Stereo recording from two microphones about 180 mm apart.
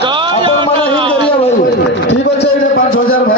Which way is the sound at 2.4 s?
55° left (ahead or behind).